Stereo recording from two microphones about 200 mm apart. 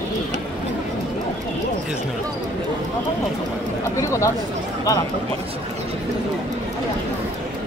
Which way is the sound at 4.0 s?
15° left (ahead or behind).